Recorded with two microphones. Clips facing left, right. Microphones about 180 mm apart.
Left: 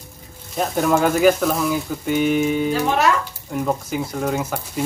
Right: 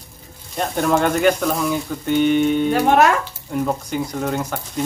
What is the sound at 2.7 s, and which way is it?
Speech, 55° right (ahead or behind).